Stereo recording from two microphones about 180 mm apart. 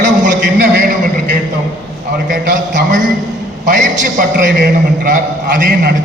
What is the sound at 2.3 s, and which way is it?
A man's voice, 45° right (ahead or behind).